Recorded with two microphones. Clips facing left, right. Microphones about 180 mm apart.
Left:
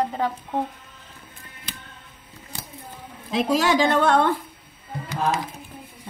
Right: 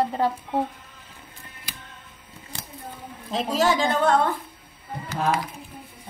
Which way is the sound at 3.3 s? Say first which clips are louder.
Left 2 dB; 70° left (ahead or behind).